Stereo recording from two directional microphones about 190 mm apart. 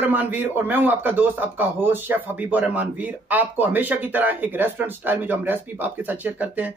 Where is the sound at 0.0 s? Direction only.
10° right (ahead or behind).